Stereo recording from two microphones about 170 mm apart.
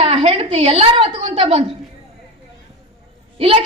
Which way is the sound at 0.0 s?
35° right (ahead or behind).